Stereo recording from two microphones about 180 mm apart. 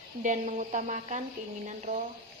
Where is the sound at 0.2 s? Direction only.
40° right (ahead or behind).